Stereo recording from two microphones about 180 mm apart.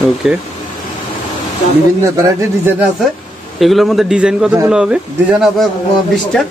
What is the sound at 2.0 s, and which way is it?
Speech, 15° right (ahead or behind).